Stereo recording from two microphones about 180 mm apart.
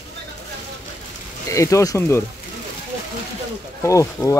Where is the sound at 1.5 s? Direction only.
15° left (ahead or behind).